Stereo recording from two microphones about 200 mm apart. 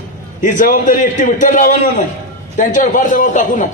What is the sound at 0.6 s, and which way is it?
A man's voice, 40° left (ahead or behind).